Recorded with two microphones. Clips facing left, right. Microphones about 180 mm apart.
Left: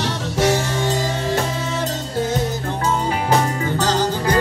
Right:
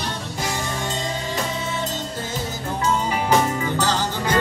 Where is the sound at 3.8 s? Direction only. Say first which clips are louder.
Left 4 dB; 45° left (ahead or behind).